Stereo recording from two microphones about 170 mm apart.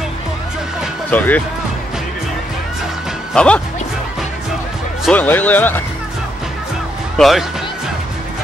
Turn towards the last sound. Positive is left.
turn(degrees=0)  # may be behind; listen again after turning